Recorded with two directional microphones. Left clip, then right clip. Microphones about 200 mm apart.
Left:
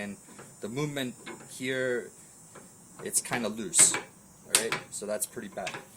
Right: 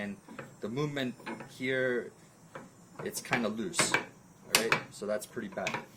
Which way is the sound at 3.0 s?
10° left (ahead or behind).